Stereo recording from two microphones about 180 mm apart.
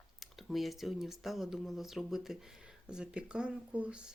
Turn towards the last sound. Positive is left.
turn(degrees=-5)  # may be behind; listen again after turning